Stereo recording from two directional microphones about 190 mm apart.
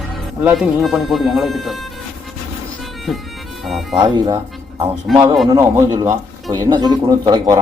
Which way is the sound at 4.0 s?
20° right (ahead or behind).